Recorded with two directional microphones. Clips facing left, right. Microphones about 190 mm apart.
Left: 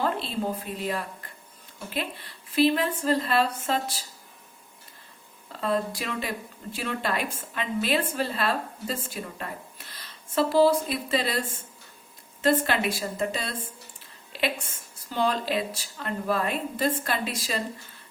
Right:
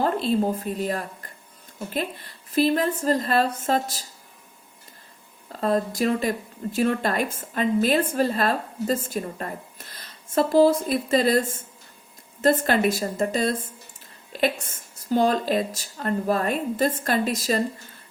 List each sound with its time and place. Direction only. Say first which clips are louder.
0.0 s a woman's voice: right 6 dB; 45° right (ahead or behind)
5.5 s speech: right 4 dB; 40° right (ahead or behind)
14.3 s a sound: right 5 dB; 45° right (ahead or behind)
15.1 s speech: right 5 dB; 45° right (ahead or behind)